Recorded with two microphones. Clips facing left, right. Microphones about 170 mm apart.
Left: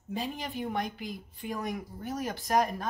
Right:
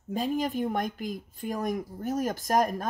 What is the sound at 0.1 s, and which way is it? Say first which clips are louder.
Speech: right 7 dB; 45° right (ahead or behind).